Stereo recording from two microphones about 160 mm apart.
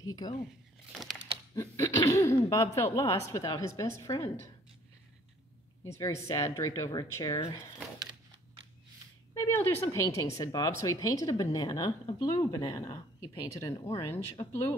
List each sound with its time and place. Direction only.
0.0 s speech: 25° left (ahead or behind)
1.5 s speech: 20° left (ahead or behind)
5.9 s speech: 20° left (ahead or behind)
9.3 s speech: 15° left (ahead or behind)